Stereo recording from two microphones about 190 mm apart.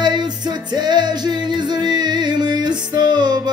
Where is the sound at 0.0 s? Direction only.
20° right (ahead or behind).